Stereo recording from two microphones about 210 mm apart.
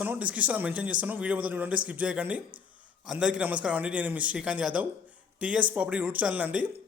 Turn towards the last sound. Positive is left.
turn(degrees=-5)  # may be behind; listen again after turning